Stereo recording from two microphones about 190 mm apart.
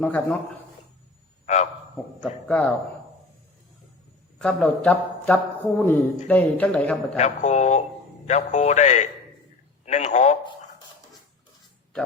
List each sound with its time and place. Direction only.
0.0 s speech: 10° left (ahead or behind)
1.5 s a man's voice: 40° left (ahead or behind)
2.2 s speech: 10° left (ahead or behind)
4.4 s speech: 5° left (ahead or behind)
7.2 s a man's voice: 35° left (ahead or behind)